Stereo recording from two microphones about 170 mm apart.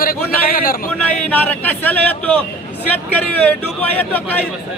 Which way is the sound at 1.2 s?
10° left (ahead or behind).